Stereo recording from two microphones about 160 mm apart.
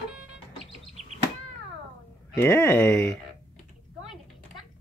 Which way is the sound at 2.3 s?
15° left (ahead or behind).